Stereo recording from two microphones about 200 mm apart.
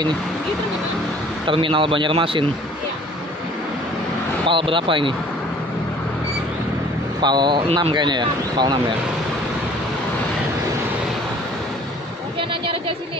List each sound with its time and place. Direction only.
1.4 s speech: 25° right (ahead or behind)
4.5 s speech: 25° right (ahead or behind)
7.2 s speech: 20° right (ahead or behind)